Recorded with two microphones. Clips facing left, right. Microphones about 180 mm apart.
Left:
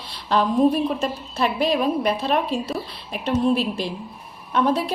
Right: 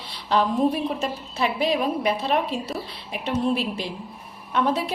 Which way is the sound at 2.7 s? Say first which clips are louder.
Left 3 dB; 20° right (ahead or behind).